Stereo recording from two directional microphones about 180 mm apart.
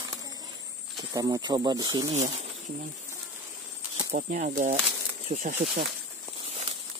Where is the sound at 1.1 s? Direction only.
20° right (ahead or behind).